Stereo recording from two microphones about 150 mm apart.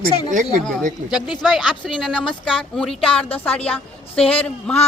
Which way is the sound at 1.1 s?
Centre (ahead or behind).